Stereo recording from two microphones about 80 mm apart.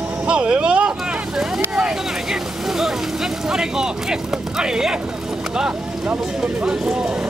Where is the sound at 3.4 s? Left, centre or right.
Centre.